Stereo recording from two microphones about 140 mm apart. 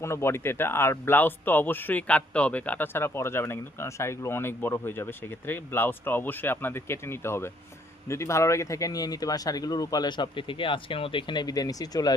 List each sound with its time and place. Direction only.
0.0 s speech: 20° left (ahead or behind)